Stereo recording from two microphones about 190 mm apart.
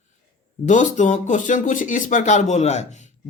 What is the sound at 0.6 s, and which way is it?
Speech, 40° left (ahead or behind).